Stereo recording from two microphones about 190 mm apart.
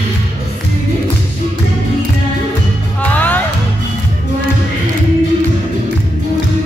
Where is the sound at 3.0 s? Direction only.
10° left (ahead or behind).